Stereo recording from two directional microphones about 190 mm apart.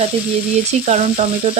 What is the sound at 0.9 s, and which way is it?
Speech, 35° right (ahead or behind).